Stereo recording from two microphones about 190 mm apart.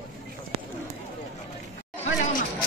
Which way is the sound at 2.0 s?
40° left (ahead or behind).